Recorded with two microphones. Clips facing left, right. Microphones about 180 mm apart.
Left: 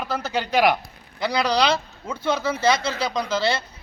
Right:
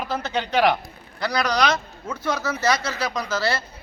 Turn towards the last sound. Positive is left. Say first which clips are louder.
# left 2 dB
turn(degrees=25)  # may be behind; listen again after turning